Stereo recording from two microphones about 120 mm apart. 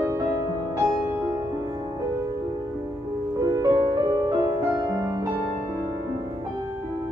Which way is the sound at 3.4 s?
30° right (ahead or behind).